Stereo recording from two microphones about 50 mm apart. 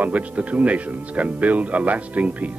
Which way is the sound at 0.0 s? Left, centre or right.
Right.